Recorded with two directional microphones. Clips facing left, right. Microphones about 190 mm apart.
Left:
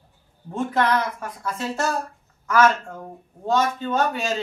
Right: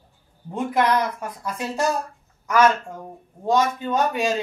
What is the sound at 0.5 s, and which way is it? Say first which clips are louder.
A man's voice: right 1 dB; 15° right (ahead or behind).